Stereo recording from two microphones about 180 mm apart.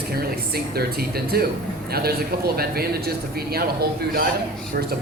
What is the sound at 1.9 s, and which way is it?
Speech, 60° right (ahead or behind).